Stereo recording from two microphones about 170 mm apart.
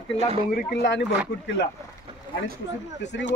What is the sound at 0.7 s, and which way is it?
Speech, 90° left.